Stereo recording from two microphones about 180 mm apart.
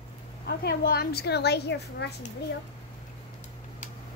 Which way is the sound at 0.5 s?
65° left (ahead or behind).